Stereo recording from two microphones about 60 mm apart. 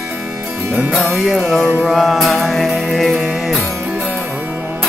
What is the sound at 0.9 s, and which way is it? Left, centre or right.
Music, centre.